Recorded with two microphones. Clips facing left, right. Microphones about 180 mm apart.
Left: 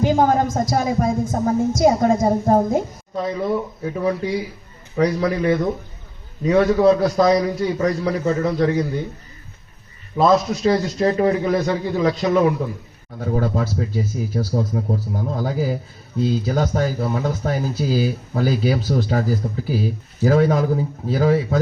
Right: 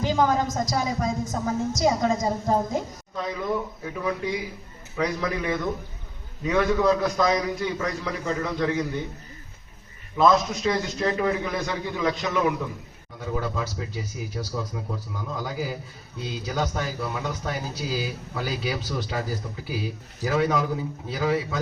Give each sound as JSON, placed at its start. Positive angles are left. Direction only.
{"t": 0.0, "sound": "a woman's voice", "side_deg": 50}
{"t": 3.2, "sound": "a man's voice", "side_deg": 30}
{"t": 10.2, "sound": "a man's voice", "side_deg": 30}